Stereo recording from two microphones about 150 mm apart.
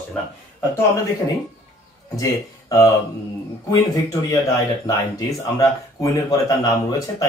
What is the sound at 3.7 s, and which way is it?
Speech, 25° left (ahead or behind).